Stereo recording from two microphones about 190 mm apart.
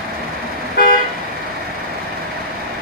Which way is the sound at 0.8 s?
50° left (ahead or behind).